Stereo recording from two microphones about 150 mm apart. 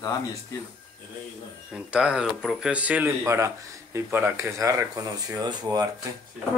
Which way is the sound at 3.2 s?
20° right (ahead or behind).